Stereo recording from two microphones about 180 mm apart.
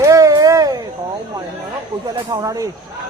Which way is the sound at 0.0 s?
20° right (ahead or behind).